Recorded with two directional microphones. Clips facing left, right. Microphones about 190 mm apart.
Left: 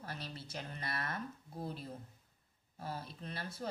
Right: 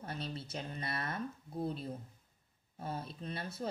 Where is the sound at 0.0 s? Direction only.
25° right (ahead or behind).